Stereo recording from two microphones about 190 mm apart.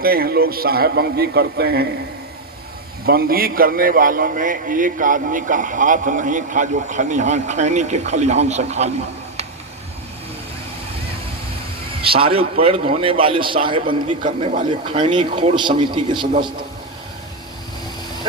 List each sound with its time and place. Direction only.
0.0 s a man's voice: 50° right (ahead or behind)
3.1 s a man's voice: 50° right (ahead or behind); by 8.9 s 35° right (ahead or behind)
12.0 s a man's voice: 30° right (ahead or behind)